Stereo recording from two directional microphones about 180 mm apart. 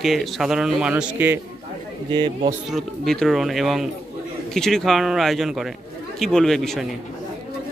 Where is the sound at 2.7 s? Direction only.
Centre (ahead or behind).